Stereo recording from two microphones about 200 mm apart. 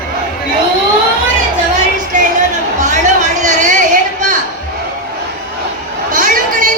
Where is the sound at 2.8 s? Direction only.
35° right (ahead or behind).